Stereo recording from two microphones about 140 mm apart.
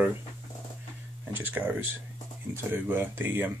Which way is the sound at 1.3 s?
15° right (ahead or behind).